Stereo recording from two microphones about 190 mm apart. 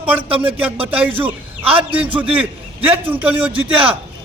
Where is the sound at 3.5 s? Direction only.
30° right (ahead or behind).